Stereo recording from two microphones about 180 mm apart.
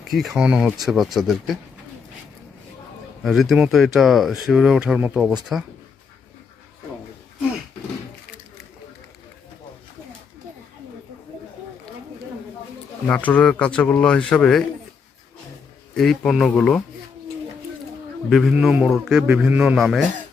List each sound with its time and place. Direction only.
0.1 s speech: centre (ahead or behind)
3.2 s speech: centre (ahead or behind)
13.1 s speech: 10° left (ahead or behind)
16.0 s speech: centre (ahead or behind)
18.3 s speech: centre (ahead or behind)